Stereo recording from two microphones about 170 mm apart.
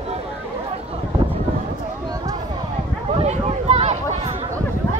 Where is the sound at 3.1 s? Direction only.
40° right (ahead or behind).